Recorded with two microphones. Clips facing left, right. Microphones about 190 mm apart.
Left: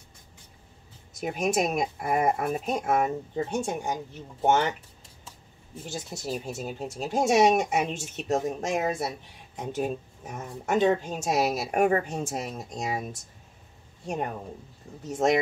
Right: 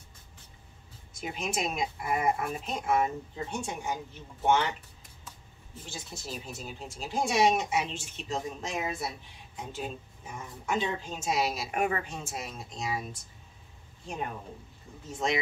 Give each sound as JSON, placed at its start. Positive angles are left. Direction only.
{"t": 1.2, "sound": "speech", "side_deg": 50}
{"t": 6.2, "sound": "speech", "side_deg": 45}